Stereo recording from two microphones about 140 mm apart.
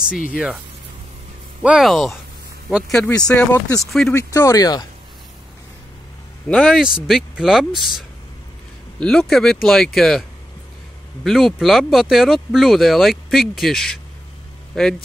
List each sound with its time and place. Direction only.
0.3 s speech: 10° right (ahead or behind)
1.6 s speech: 5° right (ahead or behind)
4.1 s speech: 20° left (ahead or behind)
6.5 s speech: 5° left (ahead or behind)
9.0 s speech: 5° left (ahead or behind)
11.2 s speech: centre (ahead or behind)